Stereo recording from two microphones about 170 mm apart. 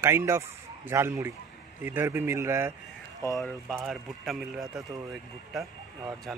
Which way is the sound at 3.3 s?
Centre (ahead or behind).